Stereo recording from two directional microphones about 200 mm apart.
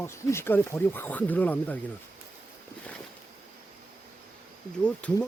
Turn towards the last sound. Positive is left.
turn(degrees=5)  # may be behind; listen again after turning